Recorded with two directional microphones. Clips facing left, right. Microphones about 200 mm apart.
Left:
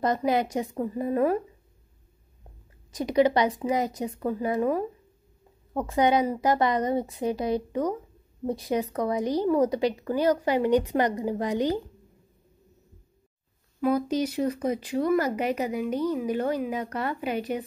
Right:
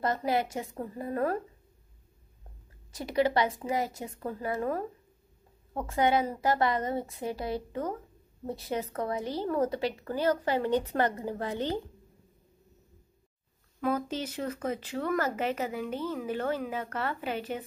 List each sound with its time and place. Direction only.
0.0 s speech: 20° left (ahead or behind)
2.9 s speech: 20° left (ahead or behind)
5.9 s speech: 15° left (ahead or behind)
13.7 s speech: 10° left (ahead or behind)